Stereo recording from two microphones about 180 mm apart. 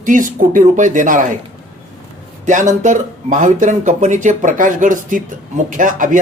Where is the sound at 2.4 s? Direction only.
45° right (ahead or behind).